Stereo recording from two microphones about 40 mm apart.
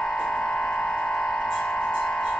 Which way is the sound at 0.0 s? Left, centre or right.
Left.